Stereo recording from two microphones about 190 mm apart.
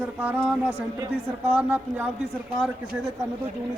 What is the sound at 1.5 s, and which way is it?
Speech, 10° right (ahead or behind).